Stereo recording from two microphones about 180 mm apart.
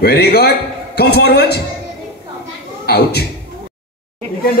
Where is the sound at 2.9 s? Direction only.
60° left (ahead or behind).